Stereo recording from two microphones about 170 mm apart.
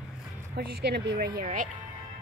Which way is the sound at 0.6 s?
70° right (ahead or behind).